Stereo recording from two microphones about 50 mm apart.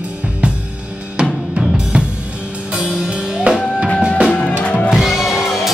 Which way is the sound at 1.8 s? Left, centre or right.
Centre.